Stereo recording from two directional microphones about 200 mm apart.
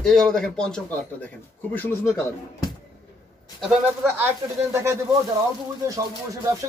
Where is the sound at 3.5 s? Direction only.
Centre (ahead or behind).